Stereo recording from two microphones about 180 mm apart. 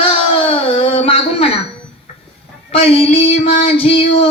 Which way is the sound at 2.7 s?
35° left (ahead or behind).